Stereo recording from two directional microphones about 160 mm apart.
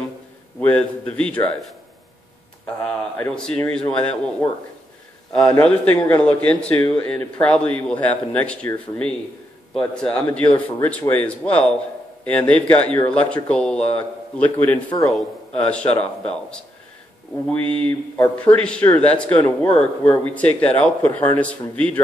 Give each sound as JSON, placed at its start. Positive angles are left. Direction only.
{"t": 0.6, "sound": "speech", "side_deg": 5}
{"t": 3.2, "sound": "speech", "side_deg": 5}
{"t": 5.6, "sound": "speech", "side_deg": 10}
{"t": 17.5, "sound": "speech", "side_deg": 10}